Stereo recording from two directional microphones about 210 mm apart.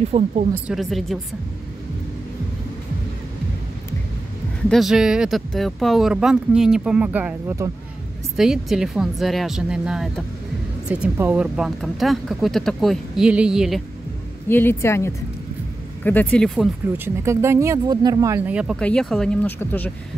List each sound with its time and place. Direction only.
0.1 s a woman's voice: 30° right (ahead or behind)
0.7 s speech: centre (ahead or behind)
4.6 s speech: centre (ahead or behind)
8.4 s speech: centre (ahead or behind)
14.5 s speech: 10° left (ahead or behind)
16.9 s speech: 10° right (ahead or behind); by 19.9 s 10° left (ahead or behind)